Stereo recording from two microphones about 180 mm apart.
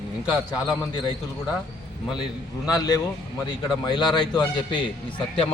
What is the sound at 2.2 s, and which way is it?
A man's voice, 20° left (ahead or behind).